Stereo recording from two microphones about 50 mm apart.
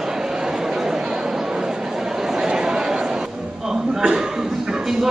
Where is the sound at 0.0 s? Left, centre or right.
Centre.